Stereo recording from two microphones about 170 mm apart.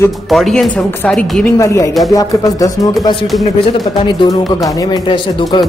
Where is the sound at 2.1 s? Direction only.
20° left (ahead or behind).